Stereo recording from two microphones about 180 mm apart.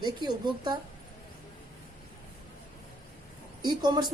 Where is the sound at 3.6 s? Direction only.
25° right (ahead or behind).